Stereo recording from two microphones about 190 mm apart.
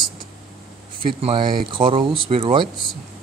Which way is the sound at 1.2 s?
25° right (ahead or behind).